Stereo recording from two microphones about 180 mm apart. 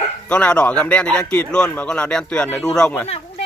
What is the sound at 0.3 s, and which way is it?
A man's voice, 5° left (ahead or behind).